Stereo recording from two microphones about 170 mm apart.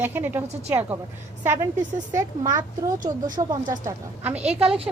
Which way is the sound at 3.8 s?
10° right (ahead or behind).